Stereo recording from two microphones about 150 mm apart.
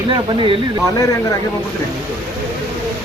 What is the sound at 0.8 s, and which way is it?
Speech, 20° left (ahead or behind).